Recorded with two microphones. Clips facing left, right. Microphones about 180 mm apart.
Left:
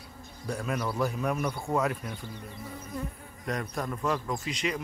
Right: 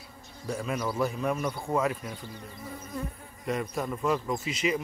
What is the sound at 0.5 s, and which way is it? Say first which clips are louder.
Speech: right 1 dB; centre (ahead or behind).